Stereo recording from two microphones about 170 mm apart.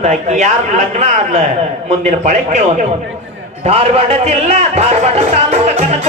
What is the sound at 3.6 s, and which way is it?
Speech, 40° right (ahead or behind).